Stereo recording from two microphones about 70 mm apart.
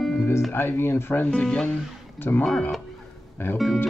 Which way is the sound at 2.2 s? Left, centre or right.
Left.